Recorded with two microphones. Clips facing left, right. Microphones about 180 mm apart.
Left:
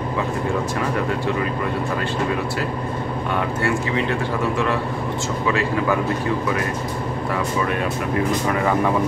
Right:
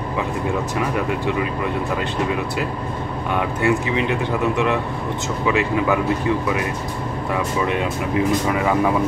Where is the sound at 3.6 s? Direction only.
15° right (ahead or behind).